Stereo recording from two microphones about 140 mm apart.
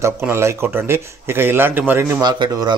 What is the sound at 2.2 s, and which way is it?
Speech, 30° right (ahead or behind).